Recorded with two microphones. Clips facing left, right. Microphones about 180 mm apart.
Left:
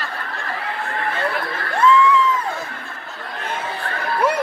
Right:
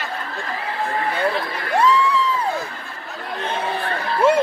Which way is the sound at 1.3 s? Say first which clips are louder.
Right 2 dB; 20° right (ahead or behind).